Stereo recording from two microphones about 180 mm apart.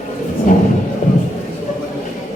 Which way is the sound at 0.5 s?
45° left (ahead or behind).